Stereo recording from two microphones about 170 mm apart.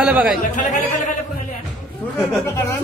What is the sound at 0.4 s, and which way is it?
Speech, 50° left (ahead or behind).